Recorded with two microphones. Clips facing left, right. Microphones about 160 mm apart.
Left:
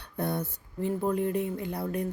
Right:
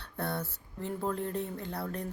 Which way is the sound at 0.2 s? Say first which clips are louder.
Left 4 dB; 15° left (ahead or behind).